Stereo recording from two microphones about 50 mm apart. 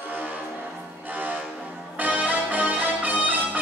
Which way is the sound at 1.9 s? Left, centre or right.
Right.